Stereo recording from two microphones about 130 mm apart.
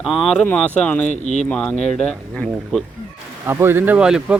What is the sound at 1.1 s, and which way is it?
Speech, 65° left (ahead or behind).